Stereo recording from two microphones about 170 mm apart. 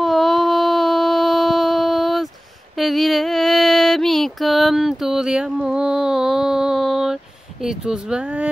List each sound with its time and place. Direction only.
0.0 s a sound: centre (ahead or behind)
2.8 s mantra: centre (ahead or behind)
7.6 s speech: 5° right (ahead or behind)